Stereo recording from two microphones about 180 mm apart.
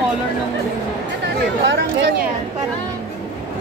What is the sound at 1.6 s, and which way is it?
Speech, 75° right (ahead or behind).